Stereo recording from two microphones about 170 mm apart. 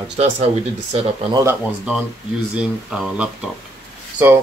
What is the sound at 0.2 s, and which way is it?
Speech, 35° right (ahead or behind).